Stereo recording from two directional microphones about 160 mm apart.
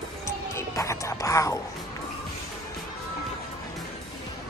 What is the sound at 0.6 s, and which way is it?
Music, 20° left (ahead or behind).